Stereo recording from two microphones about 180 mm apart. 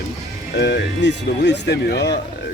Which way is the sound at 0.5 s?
70° left (ahead or behind).